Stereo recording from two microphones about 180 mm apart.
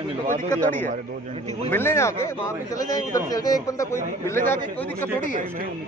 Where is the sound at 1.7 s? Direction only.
10° left (ahead or behind).